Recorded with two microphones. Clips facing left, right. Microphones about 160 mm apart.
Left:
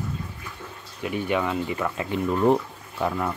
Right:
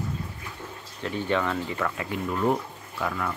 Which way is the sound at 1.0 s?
15° left (ahead or behind).